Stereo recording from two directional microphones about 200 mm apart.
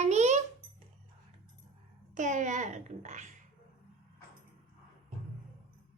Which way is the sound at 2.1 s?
40° right (ahead or behind).